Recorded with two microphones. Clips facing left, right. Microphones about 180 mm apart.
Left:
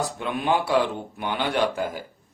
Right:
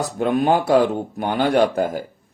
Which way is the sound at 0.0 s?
40° right (ahead or behind).